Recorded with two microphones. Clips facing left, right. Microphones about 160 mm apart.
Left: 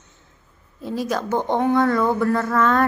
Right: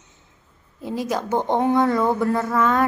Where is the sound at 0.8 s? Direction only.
20° right (ahead or behind).